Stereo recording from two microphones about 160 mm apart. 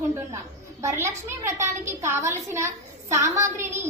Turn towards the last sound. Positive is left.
turn(degrees=-15)  # may be behind; listen again after turning